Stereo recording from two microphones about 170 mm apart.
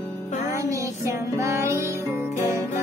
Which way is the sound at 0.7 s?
20° right (ahead or behind).